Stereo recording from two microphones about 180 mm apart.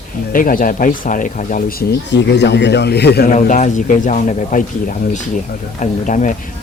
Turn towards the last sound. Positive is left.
turn(degrees=45)  # may be behind; listen again after turning